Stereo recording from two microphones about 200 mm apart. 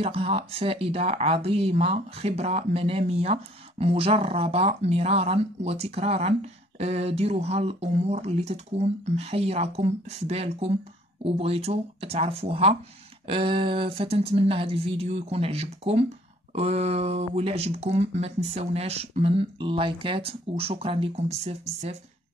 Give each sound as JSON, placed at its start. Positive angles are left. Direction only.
{"t": 0.0, "sound": "speech", "side_deg": -30}